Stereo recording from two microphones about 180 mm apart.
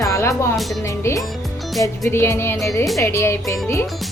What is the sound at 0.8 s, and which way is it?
A woman's voice, 15° left (ahead or behind).